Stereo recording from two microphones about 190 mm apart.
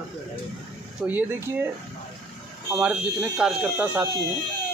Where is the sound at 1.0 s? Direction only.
10° right (ahead or behind).